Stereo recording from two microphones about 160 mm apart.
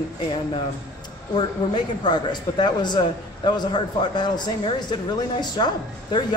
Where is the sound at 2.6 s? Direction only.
25° left (ahead or behind).